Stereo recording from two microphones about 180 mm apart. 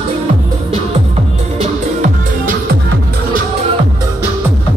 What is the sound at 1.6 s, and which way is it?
Music, 40° right (ahead or behind).